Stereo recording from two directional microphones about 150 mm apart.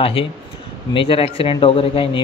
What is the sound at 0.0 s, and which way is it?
Speech, 35° left (ahead or behind).